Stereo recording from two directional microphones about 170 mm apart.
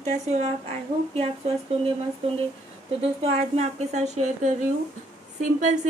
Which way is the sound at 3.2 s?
40° right (ahead or behind).